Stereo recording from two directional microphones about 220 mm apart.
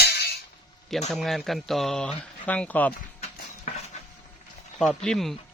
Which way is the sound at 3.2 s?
30° left (ahead or behind).